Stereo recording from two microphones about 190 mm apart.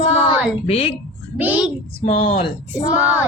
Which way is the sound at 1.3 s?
10° right (ahead or behind).